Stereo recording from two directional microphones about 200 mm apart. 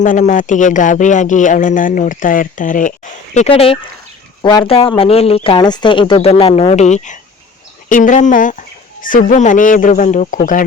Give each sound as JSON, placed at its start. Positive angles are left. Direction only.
{"t": 0.0, "sound": "speech", "side_deg": 40}
{"t": 3.3, "sound": "speech", "side_deg": 30}